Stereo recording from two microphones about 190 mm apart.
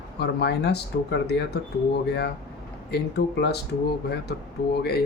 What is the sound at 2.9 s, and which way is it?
Speech, 60° left (ahead or behind).